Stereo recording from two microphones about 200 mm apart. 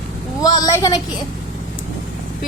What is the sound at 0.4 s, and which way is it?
Speech, 20° left (ahead or behind).